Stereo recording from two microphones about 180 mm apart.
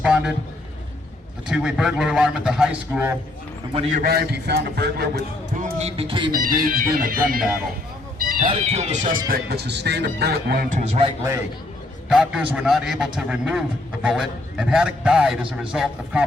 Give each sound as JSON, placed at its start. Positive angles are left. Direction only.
{"t": 0.0, "sound": "a man's voice", "side_deg": -5}
{"t": 1.5, "sound": "a man's voice", "side_deg": -5}
{"t": 3.7, "sound": "a man's voice", "side_deg": -35}
{"t": 4.0, "sound": "speech", "side_deg": -60}
{"t": 5.5, "sound": "speech", "side_deg": -45}
{"t": 6.0, "sound": "speech", "side_deg": -30}
{"t": 6.4, "sound": "speech", "side_deg": -50}
{"t": 9.3, "sound": "speech", "side_deg": -60}
{"t": 10.8, "sound": "a man's voice", "side_deg": -35}
{"t": 12.0, "sound": "a man's voice", "side_deg": -5}